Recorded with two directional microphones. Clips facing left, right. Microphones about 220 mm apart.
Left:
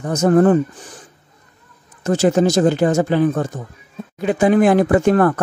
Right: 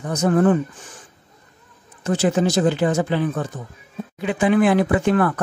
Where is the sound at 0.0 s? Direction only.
45° left (ahead or behind).